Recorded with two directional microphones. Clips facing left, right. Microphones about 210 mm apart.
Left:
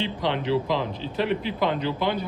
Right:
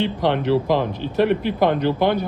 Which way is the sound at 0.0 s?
50° right (ahead or behind).